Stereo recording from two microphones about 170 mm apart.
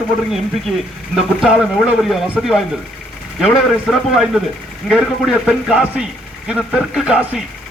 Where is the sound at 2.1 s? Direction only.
Centre (ahead or behind).